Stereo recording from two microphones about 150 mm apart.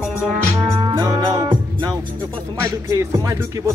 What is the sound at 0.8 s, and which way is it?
Music, 30° right (ahead or behind).